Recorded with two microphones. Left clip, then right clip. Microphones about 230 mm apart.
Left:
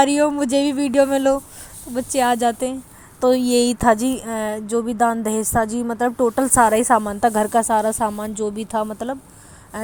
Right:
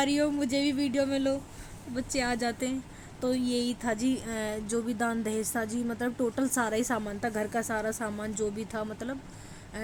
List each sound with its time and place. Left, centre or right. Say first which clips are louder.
0.0 s speech: left 11 dB; left